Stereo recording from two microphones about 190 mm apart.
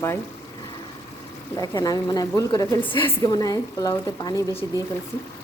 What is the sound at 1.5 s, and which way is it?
A woman's voice, 20° left (ahead or behind).